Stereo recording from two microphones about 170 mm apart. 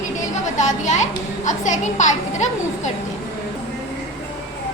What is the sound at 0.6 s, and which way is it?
A child's voice, 45° left (ahead or behind).